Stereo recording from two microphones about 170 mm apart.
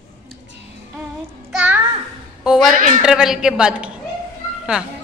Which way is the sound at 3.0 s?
5° right (ahead or behind).